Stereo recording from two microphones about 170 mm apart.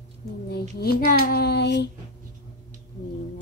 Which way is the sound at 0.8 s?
65° left (ahead or behind).